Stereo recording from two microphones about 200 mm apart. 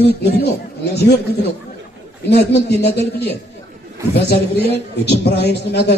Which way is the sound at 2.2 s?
55° left (ahead or behind).